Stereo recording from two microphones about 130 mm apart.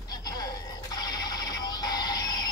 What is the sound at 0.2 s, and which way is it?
Music, 30° left (ahead or behind).